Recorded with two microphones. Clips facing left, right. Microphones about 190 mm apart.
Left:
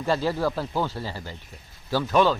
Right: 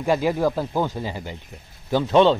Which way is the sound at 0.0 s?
15° right (ahead or behind).